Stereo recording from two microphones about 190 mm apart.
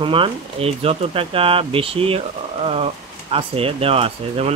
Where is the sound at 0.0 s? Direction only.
25° right (ahead or behind).